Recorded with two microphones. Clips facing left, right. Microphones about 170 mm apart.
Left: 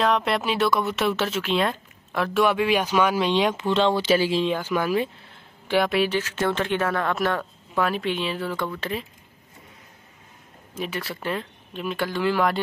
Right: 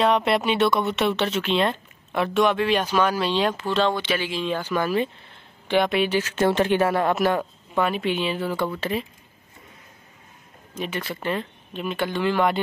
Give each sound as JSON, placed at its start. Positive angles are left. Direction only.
{"t": 0.0, "sound": "speech", "side_deg": 0}
{"t": 3.9, "sound": "speech", "side_deg": 35}
{"t": 4.5, "sound": "speech", "side_deg": 10}
{"t": 6.1, "sound": "speech", "side_deg": -20}
{"t": 10.7, "sound": "speech", "side_deg": 0}